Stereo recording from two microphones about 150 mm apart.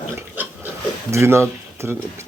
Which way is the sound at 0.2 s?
10° right (ahead or behind).